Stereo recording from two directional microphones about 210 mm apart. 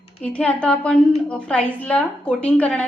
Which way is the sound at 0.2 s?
5° left (ahead or behind).